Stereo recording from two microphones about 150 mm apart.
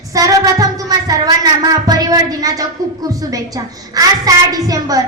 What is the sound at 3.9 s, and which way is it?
A woman's voice, 25° right (ahead or behind).